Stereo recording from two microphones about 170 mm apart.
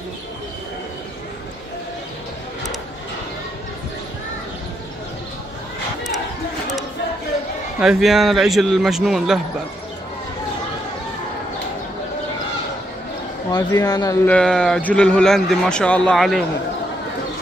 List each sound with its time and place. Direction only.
7.8 s speech: 5° right (ahead or behind)
13.5 s speech: 25° left (ahead or behind)
14.2 s speech: 5° left (ahead or behind)